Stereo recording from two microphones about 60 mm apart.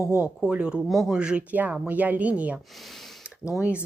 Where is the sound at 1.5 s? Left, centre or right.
Right.